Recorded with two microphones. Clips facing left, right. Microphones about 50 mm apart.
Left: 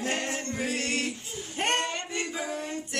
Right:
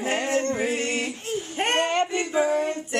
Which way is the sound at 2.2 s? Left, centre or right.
Right.